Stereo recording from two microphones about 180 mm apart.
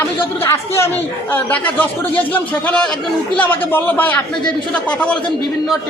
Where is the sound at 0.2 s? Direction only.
15° left (ahead or behind).